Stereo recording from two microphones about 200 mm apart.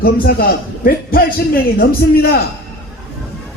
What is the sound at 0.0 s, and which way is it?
A man's voice, 50° left (ahead or behind).